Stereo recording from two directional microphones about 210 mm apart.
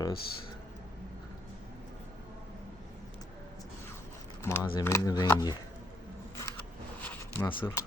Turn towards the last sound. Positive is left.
turn(degrees=10)  # may be behind; listen again after turning